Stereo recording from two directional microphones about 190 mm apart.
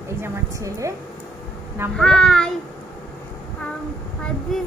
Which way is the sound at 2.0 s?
5° left (ahead or behind).